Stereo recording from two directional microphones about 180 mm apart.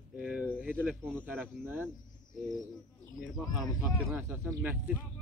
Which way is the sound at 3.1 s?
Centre (ahead or behind).